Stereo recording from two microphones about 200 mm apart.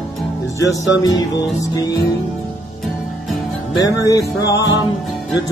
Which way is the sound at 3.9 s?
15° left (ahead or behind).